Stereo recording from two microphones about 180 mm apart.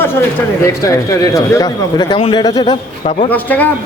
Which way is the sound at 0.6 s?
15° left (ahead or behind).